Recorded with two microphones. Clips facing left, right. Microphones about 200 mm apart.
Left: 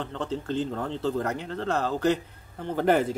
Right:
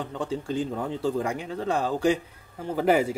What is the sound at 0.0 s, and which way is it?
Speech, 10° right (ahead or behind).